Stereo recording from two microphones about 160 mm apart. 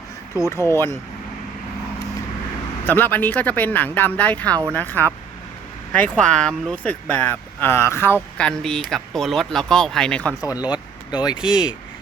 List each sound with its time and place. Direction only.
0.5 s speech: 15° left (ahead or behind)
2.8 s speech: 10° left (ahead or behind)
10.7 s speech: 25° left (ahead or behind)